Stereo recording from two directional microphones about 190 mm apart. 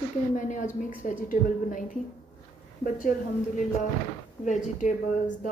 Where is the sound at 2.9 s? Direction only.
45° left (ahead or behind).